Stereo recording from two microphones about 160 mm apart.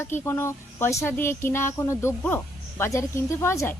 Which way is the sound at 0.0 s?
15° left (ahead or behind).